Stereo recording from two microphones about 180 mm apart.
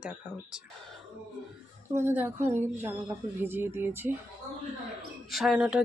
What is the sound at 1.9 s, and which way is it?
A woman's voice, 10° right (ahead or behind).